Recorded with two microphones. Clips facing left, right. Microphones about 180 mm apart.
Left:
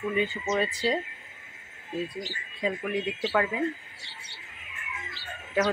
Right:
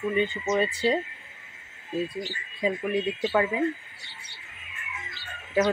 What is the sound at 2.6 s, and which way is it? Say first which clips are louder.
Speech: right 3 dB; 5° right (ahead or behind).